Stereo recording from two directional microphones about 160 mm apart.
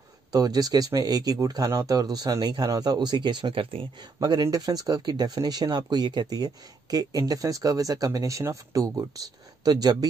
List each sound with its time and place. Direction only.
0.3 s speech: 25° right (ahead or behind)